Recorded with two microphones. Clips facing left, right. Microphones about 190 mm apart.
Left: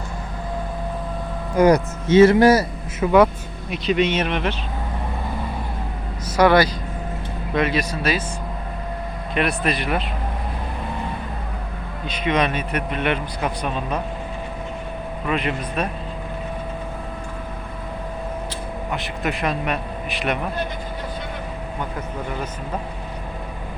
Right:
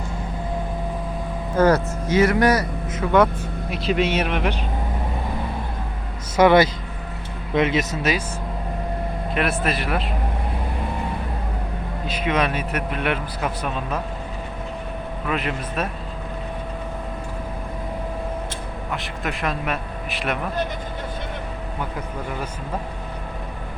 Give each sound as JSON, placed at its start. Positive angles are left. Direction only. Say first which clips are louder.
{"t": 1.5, "sound": "speech", "louder": "left 2 dB", "side_deg": 15}
{"t": 2.0, "sound": "a man's voice", "louder": "left 6 dB", "side_deg": 25}
{"t": 3.7, "sound": "speech", "louder": "left 2 dB", "side_deg": -5}
{"t": 6.3, "sound": "speech", "louder": "right 1 dB", "side_deg": -20}
{"t": 9.3, "sound": "a man's voice", "louder": "left 2 dB", "side_deg": 0}
{"t": 12.0, "sound": "a man's voice", "louder": "left 1 dB", "side_deg": -5}
{"t": 15.3, "sound": "a man's voice", "louder": "left 2 dB", "side_deg": 0}
{"t": 18.9, "sound": "speech", "louder": "left 3 dB", "side_deg": 0}